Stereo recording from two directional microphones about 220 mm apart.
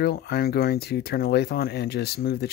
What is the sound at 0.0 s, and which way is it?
Speech, 45° left (ahead or behind).